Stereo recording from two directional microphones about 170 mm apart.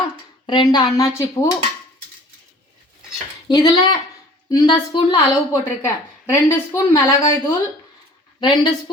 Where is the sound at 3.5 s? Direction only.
25° left (ahead or behind).